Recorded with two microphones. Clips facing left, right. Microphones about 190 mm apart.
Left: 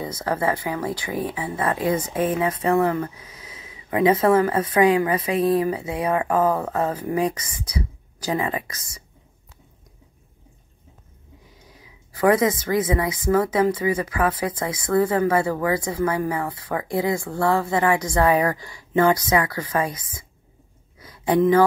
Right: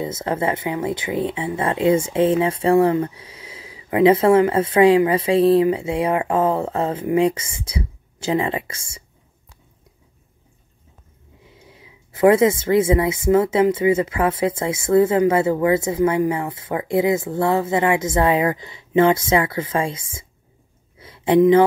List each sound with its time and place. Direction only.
0.0 s speech: 25° right (ahead or behind)
11.7 s speech: 25° right (ahead or behind)
21.0 s a sound: 25° right (ahead or behind)